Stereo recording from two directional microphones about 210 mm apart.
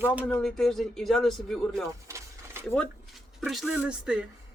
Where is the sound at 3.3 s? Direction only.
Centre (ahead or behind).